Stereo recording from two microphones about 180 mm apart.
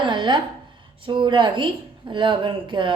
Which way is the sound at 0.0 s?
25° right (ahead or behind).